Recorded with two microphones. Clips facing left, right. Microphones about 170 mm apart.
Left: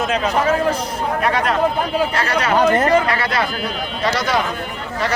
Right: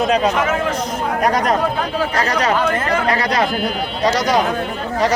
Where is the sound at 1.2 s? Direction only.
40° right (ahead or behind).